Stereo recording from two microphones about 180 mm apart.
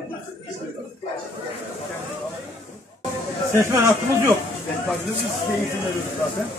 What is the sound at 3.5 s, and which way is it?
Speech, 15° right (ahead or behind).